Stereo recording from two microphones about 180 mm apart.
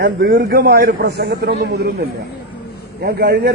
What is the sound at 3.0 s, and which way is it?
Speech, 70° right (ahead or behind).